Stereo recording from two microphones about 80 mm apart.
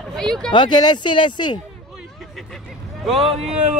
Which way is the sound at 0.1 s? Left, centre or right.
Centre.